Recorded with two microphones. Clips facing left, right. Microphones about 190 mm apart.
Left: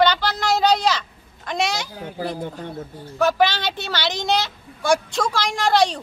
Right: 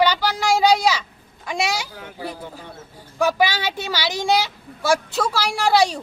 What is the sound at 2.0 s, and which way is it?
Speech, 30° left (ahead or behind).